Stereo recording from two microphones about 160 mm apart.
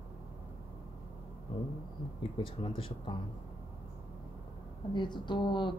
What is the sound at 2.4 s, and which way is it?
Speech, 35° left (ahead or behind).